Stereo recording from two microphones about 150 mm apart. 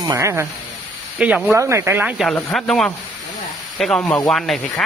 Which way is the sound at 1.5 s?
20° right (ahead or behind).